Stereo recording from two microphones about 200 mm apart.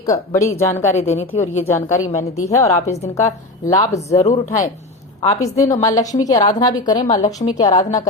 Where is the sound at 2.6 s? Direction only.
30° left (ahead or behind).